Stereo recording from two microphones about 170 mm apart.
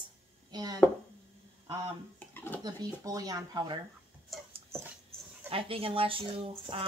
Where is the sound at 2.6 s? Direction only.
20° right (ahead or behind).